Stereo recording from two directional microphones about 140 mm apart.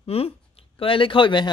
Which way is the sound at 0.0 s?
45° left (ahead or behind).